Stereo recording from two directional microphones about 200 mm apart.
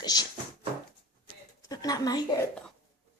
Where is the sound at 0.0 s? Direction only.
20° left (ahead or behind).